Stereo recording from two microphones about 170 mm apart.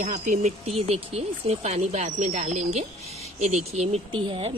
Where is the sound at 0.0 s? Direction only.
45° right (ahead or behind).